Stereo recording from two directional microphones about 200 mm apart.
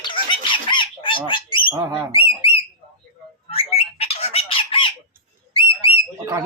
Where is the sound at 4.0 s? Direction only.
30° left (ahead or behind).